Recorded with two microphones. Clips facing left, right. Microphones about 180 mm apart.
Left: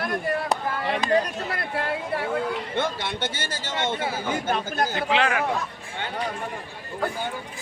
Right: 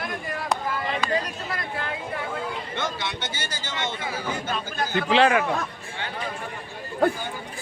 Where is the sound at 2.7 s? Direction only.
55° left (ahead or behind).